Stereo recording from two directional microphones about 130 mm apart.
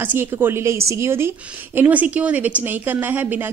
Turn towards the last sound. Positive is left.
turn(degrees=-15)  # may be behind; listen again after turning